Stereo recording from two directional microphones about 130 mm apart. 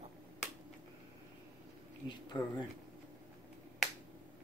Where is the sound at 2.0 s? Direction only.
35° left (ahead or behind).